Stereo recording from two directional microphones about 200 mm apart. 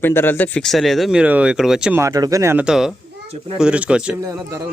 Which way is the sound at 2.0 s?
15° right (ahead or behind).